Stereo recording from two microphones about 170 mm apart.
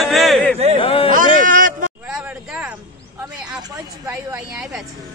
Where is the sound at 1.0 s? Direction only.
50° right (ahead or behind).